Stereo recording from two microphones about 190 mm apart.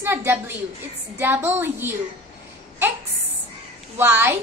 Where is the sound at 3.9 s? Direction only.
10° right (ahead or behind).